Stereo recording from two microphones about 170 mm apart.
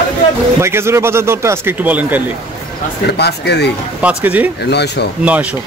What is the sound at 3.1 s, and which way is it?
Speech, 75° left (ahead or behind).